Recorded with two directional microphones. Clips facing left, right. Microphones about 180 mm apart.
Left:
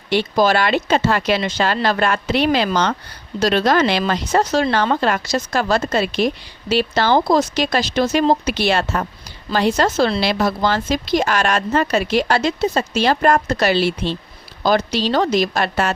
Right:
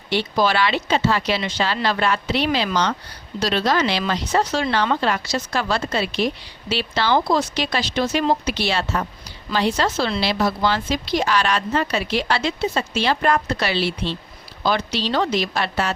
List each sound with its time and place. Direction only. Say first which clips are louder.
0.1 s speech: left 4 dB; 45° left (ahead or behind)